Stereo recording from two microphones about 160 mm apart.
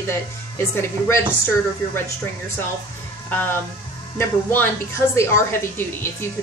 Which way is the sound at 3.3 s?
10° left (ahead or behind).